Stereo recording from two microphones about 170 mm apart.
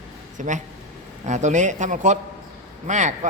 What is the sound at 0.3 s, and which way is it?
Speech, 45° right (ahead or behind).